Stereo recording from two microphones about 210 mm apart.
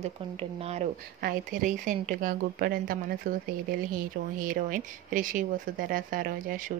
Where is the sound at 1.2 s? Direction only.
40° right (ahead or behind).